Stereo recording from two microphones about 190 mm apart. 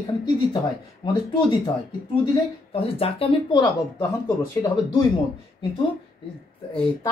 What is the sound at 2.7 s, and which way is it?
Speech, 30° left (ahead or behind).